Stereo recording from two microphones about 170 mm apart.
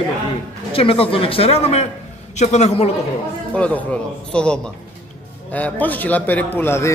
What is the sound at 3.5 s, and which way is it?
A man's voice, 5° left (ahead or behind).